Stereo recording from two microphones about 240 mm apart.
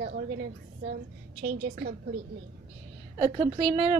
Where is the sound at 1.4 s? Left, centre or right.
Right.